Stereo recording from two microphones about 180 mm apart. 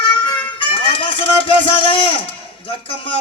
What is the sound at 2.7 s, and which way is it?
Speech, 30° left (ahead or behind).